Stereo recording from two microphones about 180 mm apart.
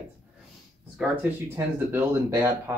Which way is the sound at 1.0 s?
10° right (ahead or behind).